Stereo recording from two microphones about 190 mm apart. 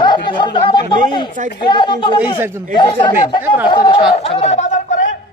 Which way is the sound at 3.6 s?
25° left (ahead or behind).